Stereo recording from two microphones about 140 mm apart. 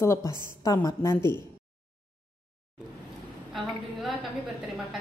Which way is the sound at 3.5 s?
Centre (ahead or behind).